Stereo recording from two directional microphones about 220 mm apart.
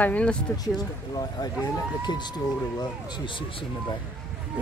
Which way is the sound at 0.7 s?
20° left (ahead or behind).